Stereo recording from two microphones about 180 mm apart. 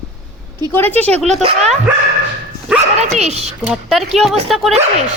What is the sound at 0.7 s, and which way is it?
Speech, 10° left (ahead or behind).